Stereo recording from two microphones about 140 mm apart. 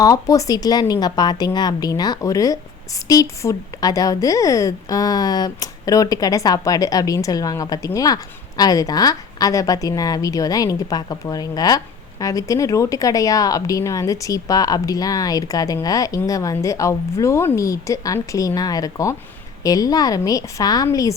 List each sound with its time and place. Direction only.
0.0 s a woman's voice: 25° left (ahead or behind)